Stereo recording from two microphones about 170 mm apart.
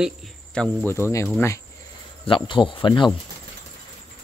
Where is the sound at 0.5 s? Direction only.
10° left (ahead or behind).